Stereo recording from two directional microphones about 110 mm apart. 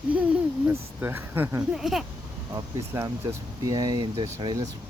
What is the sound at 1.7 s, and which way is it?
Speech, 5° right (ahead or behind).